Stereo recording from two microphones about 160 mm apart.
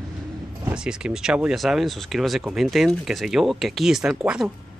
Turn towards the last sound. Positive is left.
turn(degrees=-5)  # may be behind; listen again after turning